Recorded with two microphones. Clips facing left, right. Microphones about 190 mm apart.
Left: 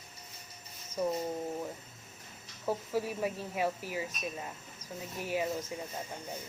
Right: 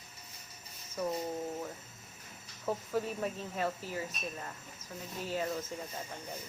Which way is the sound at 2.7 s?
10° left (ahead or behind).